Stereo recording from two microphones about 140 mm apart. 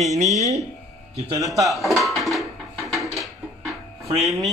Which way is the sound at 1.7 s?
Centre (ahead or behind).